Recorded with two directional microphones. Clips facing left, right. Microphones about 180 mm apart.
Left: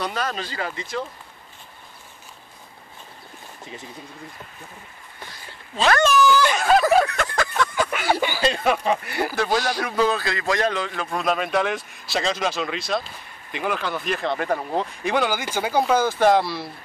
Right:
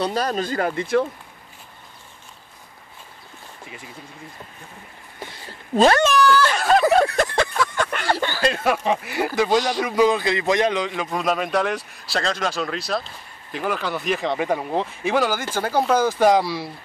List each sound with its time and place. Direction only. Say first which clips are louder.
0.0 s speech: right 5 dB; 35° right (ahead or behind); by 1.0 s 55° right (ahead or behind)
6.1 s speech: even; 5° left (ahead or behind)
7.1 s a sound: right 4 dB; 30° right (ahead or behind)
7.5 s a sound: even; centre (ahead or behind)
9.4 s a man's voice: right 4 dB; 15° right (ahead or behind)
15.3 s speech: right 1 dB; 10° left (ahead or behind)
15.7 s a man's voice: even; centre (ahead or behind)
16.0 s speech: right 2 dB; 10° right (ahead or behind)